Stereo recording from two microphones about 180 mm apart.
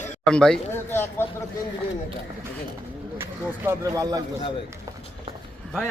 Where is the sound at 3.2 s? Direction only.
15° right (ahead or behind).